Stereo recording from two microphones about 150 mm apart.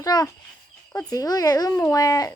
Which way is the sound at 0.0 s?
25° left (ahead or behind).